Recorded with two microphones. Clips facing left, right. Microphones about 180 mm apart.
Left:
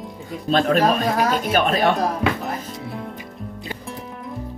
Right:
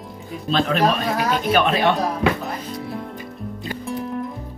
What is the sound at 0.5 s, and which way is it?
Speech, 45° left (ahead or behind).